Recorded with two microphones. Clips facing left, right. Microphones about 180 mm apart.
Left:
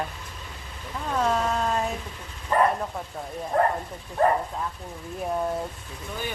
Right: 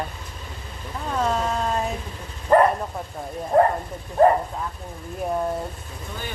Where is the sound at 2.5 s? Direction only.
60° right (ahead or behind).